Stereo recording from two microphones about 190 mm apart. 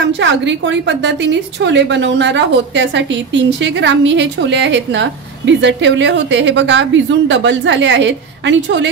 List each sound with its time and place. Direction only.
0.0 s a woman's voice: 70° right (ahead or behind)